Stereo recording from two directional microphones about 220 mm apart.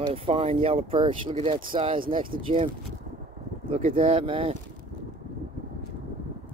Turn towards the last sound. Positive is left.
turn(degrees=-25)  # may be behind; listen again after turning